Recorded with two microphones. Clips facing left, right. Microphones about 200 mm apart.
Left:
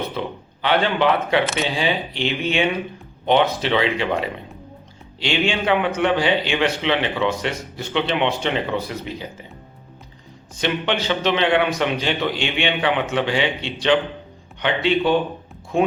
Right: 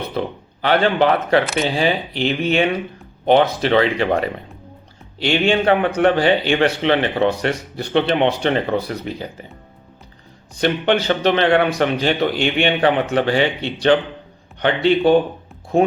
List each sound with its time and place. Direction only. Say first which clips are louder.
0.2 s a man's voice: right 4 dB; 40° right (ahead or behind)
10.6 s a man's voice: right 5 dB; 50° right (ahead or behind)